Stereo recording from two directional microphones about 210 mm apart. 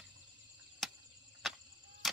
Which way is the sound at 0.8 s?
Centre (ahead or behind).